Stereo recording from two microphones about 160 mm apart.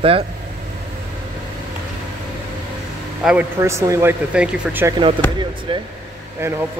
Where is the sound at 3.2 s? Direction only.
5° right (ahead or behind).